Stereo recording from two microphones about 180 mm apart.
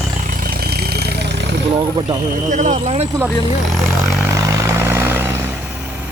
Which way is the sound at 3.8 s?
15° right (ahead or behind).